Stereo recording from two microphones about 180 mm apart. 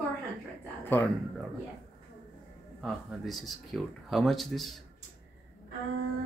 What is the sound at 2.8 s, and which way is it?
Speech, centre (ahead or behind).